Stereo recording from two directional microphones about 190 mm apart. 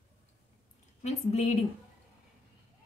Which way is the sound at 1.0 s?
35° left (ahead or behind).